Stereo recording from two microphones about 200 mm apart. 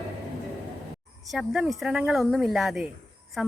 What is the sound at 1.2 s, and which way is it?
A woman's voice, centre (ahead or behind).